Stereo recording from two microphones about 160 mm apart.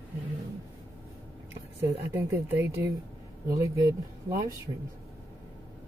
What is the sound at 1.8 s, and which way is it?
Speech, 15° right (ahead or behind).